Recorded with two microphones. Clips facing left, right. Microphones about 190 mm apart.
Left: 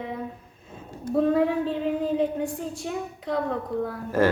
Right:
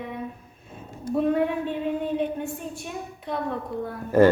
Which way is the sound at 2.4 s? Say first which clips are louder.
Left 3 dB; 90° left.